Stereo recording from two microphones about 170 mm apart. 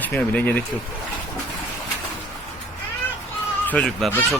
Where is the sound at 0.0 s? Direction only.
10° left (ahead or behind).